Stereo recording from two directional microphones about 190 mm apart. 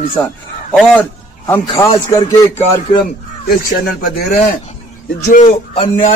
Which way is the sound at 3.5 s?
50° left (ahead or behind).